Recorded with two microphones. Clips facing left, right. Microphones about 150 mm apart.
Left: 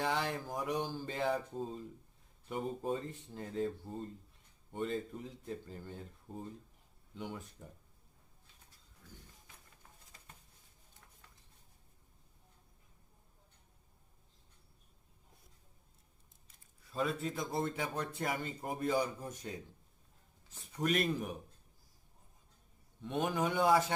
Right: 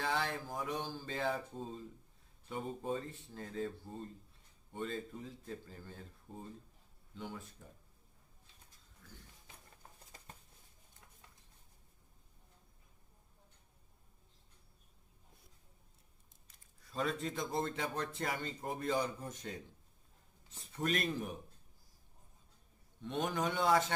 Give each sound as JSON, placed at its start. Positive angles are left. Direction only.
{"t": 0.0, "sound": "speech", "side_deg": 15}
{"t": 4.7, "sound": "speech", "side_deg": 15}
{"t": 7.1, "sound": "speech", "side_deg": 15}
{"t": 16.9, "sound": "speech", "side_deg": 5}
{"t": 20.7, "sound": "speech", "side_deg": 10}
{"t": 23.0, "sound": "speech", "side_deg": 10}